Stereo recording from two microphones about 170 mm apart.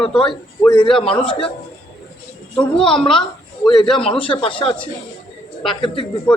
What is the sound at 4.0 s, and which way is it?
Speech, 35° left (ahead or behind).